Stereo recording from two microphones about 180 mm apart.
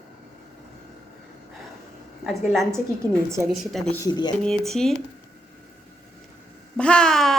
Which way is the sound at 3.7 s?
5° left (ahead or behind).